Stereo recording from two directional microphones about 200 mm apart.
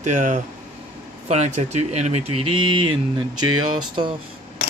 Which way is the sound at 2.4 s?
90° right.